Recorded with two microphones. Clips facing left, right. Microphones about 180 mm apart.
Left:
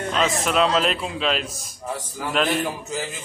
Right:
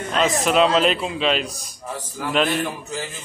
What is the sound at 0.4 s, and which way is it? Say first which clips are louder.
Speech: right 5 dB; centre (ahead or behind).